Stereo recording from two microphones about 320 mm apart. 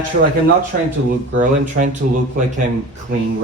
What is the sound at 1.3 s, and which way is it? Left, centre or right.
Speech, right.